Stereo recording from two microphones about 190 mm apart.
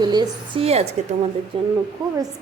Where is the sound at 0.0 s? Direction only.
20° right (ahead or behind).